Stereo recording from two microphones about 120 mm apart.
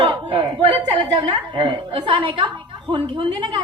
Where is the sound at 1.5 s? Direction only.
40° right (ahead or behind).